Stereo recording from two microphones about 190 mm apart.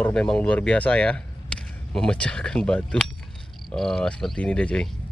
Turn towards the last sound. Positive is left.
turn(degrees=5)  # may be behind; listen again after turning